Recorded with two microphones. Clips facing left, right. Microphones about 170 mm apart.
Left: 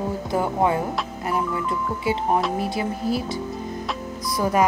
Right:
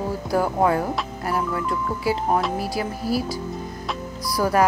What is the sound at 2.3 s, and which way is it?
Speech, centre (ahead or behind).